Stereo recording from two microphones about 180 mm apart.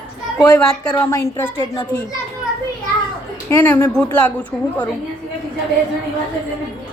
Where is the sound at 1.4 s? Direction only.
25° left (ahead or behind).